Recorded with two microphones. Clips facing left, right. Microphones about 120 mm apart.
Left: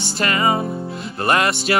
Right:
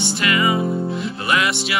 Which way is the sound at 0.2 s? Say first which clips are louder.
Left 1 dB; 40° left (ahead or behind).